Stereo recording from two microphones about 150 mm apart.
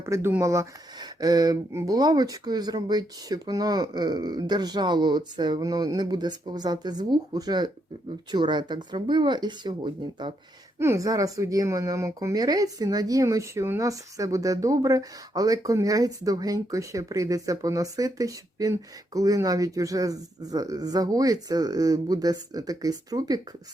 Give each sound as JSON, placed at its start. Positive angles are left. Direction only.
{"t": 0.0, "sound": "speech", "side_deg": -15}
{"t": 10.8, "sound": "speech", "side_deg": -20}